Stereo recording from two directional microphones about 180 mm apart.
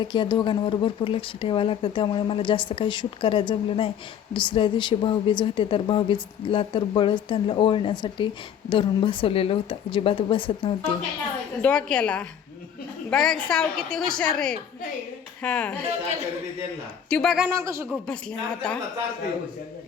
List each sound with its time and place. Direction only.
0.0 s a woman's voice: 25° left (ahead or behind)
11.6 s a woman's voice: 5° left (ahead or behind)
17.1 s a woman's voice: centre (ahead or behind)
17.5 s speech: 15° right (ahead or behind)
17.9 s a woman's voice: 5° left (ahead or behind)